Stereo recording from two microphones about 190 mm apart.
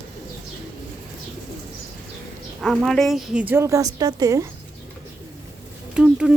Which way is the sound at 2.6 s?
Centre (ahead or behind).